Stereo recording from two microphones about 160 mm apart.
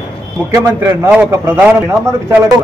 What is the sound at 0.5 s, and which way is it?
A man's voice, 15° right (ahead or behind).